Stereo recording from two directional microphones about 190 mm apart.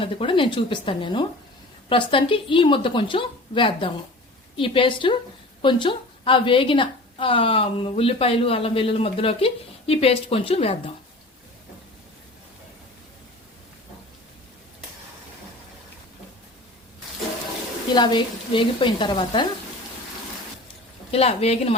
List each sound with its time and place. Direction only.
0.0 s a woman's voice: 25° left (ahead or behind)
17.9 s a woman's voice: 25° left (ahead or behind)
21.1 s a woman's voice: 30° left (ahead or behind)